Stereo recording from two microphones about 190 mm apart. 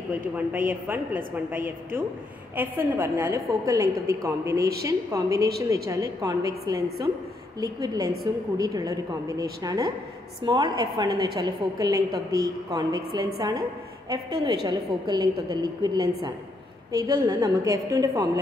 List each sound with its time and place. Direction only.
0.5 s a woman's voice: 10° right (ahead or behind)